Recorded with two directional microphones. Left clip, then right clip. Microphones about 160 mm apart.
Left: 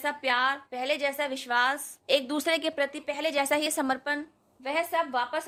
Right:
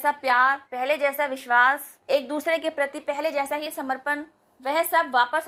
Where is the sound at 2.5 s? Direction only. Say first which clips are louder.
Right 3 dB; 50° left (ahead or behind).